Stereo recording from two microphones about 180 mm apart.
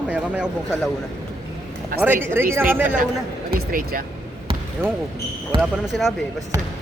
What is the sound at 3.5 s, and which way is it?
Speech, 55° right (ahead or behind).